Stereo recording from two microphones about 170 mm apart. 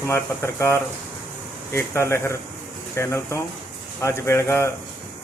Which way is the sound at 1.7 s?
15° left (ahead or behind).